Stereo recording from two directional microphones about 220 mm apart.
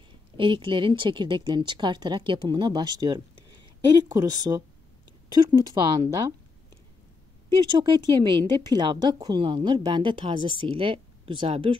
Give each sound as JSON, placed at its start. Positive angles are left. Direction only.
{"t": 0.4, "sound": "a woman's voice", "side_deg": -20}
{"t": 7.8, "sound": "a woman's voice", "side_deg": -20}